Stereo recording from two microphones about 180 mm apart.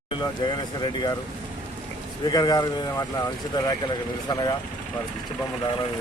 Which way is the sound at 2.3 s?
20° left (ahead or behind).